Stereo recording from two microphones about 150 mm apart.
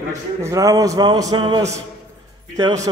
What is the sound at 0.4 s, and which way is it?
A man's voice, 20° right (ahead or behind).